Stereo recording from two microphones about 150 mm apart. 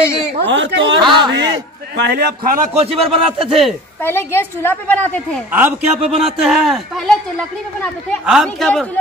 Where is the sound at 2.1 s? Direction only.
90° right.